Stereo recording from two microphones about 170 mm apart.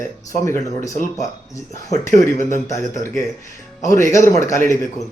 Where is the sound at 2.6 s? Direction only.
20° left (ahead or behind).